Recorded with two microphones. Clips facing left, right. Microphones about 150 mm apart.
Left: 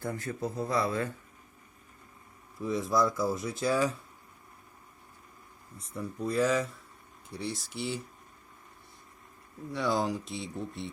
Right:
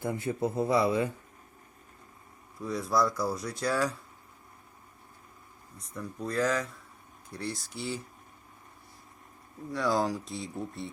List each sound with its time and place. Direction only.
0.0 s a man's voice: 20° right (ahead or behind)
2.6 s speech: centre (ahead or behind)
5.7 s speech: 5° left (ahead or behind)
9.7 s speech: centre (ahead or behind)